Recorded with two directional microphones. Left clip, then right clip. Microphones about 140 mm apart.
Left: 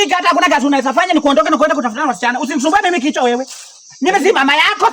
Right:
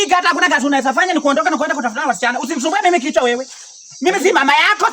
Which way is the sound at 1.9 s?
15° right (ahead or behind).